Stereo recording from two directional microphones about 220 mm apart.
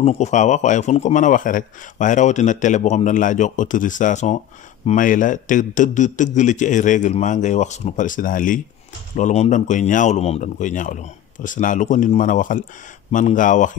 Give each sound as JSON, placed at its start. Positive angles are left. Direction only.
{"t": 0.0, "sound": "speech", "side_deg": 30}